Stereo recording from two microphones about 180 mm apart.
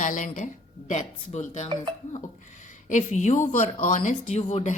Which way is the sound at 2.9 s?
40° left (ahead or behind).